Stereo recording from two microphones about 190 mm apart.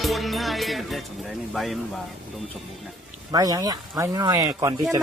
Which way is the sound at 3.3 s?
20° right (ahead or behind).